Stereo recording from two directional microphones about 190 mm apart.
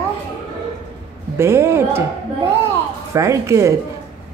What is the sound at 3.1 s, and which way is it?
Speech, 15° right (ahead or behind).